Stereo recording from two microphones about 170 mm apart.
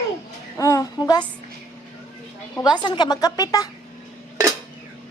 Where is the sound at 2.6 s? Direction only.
25° left (ahead or behind).